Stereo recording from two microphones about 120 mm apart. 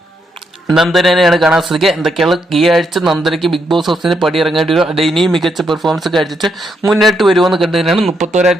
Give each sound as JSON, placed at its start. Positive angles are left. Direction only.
{"t": 0.7, "sound": "speech", "side_deg": 0}
{"t": 8.2, "sound": "speech", "side_deg": -85}